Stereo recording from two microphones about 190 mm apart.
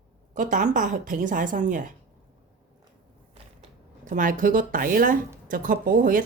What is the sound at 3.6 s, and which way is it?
Speech, 45° right (ahead or behind).